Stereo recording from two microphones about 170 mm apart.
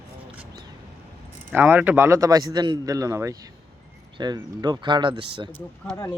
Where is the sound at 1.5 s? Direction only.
10° right (ahead or behind); by 5.2 s 25° right (ahead or behind).